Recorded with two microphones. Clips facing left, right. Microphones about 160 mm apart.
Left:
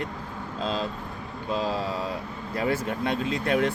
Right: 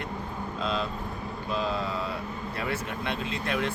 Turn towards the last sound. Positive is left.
turn(degrees=40)  # may be behind; listen again after turning